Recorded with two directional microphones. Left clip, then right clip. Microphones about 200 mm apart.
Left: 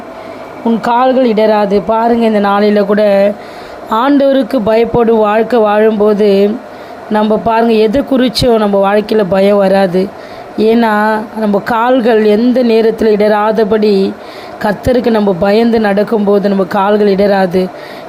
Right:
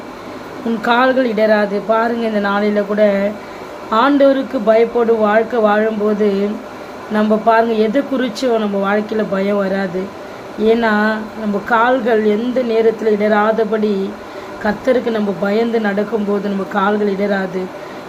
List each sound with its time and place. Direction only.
0.8 s speech: 30° left (ahead or behind)